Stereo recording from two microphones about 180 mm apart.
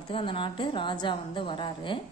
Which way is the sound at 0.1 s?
30° left (ahead or behind).